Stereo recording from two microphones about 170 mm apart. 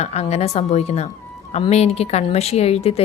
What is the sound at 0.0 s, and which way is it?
A woman's voice, 40° left (ahead or behind).